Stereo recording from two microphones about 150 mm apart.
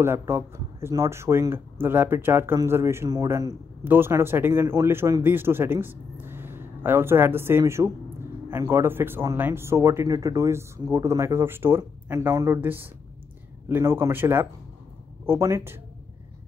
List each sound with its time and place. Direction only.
0.0 s speech: 15° right (ahead or behind)